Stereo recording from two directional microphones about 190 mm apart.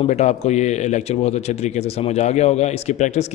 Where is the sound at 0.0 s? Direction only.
35° left (ahead or behind).